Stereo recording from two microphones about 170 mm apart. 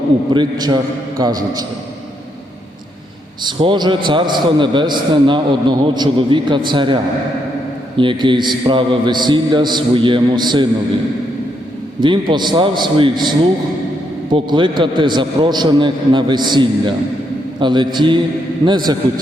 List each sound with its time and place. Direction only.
0.3 s a man's voice: 25° right (ahead or behind)
3.4 s a man's voice: 25° right (ahead or behind)
11.9 s a man's voice: 25° right (ahead or behind)